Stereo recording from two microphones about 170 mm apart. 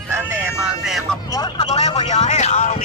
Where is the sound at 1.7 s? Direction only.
35° left (ahead or behind).